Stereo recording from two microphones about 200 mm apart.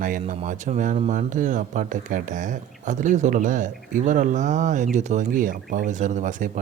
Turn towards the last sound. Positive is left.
turn(degrees=-40)  # may be behind; listen again after turning